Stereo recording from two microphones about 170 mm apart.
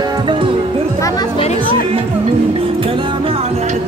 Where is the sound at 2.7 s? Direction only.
30° right (ahead or behind).